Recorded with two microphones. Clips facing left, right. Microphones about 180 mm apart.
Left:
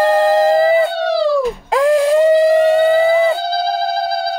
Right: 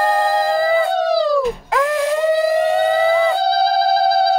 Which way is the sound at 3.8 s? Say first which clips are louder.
Right 3 dB; 35° right (ahead or behind).